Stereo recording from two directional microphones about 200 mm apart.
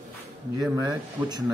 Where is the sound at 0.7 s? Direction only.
15° right (ahead or behind).